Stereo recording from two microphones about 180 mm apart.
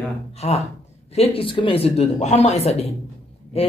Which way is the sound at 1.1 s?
35° left (ahead or behind).